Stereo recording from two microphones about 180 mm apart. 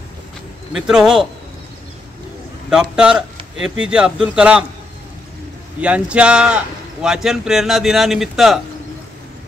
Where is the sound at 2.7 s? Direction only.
5° right (ahead or behind).